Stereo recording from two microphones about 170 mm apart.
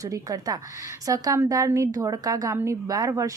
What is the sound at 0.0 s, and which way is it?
A woman's voice, 20° right (ahead or behind).